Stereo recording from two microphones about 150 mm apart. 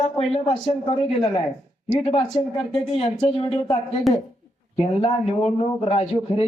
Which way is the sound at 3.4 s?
35° left (ahead or behind).